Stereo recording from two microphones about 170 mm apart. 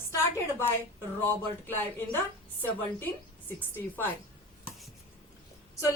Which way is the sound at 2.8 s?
10° left (ahead or behind).